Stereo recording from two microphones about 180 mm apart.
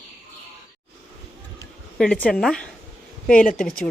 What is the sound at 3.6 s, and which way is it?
Speech, 5° left (ahead or behind).